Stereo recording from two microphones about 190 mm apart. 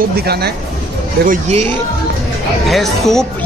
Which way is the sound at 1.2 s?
40° right (ahead or behind).